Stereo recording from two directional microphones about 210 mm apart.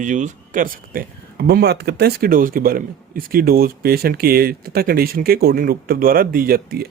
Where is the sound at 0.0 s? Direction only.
35° right (ahead or behind).